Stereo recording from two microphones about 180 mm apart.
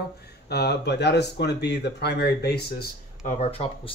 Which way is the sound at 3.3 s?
30° left (ahead or behind).